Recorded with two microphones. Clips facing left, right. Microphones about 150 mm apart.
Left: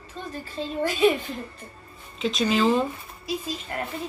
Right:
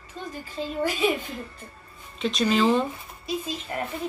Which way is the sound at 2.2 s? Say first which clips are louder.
Even; centre (ahead or behind).